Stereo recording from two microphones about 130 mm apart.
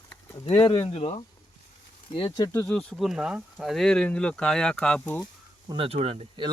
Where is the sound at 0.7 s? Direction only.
50° left (ahead or behind).